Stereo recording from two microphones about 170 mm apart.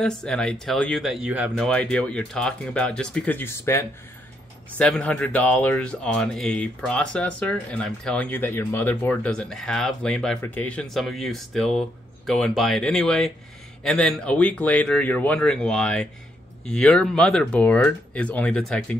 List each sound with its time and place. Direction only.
0.0 s speech: 5° left (ahead or behind)
1.7 s speech: 5° left (ahead or behind)